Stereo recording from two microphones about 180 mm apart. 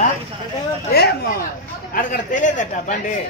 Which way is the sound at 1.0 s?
60° left (ahead or behind).